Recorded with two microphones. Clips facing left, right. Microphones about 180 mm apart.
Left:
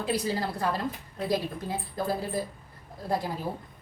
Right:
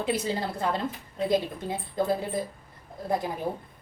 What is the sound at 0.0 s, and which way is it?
Speech, 25° right (ahead or behind).